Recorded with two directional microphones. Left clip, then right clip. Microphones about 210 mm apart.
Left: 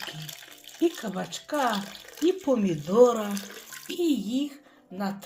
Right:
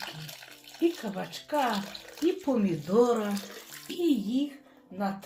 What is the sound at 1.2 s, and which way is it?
Speech, 35° left (ahead or behind).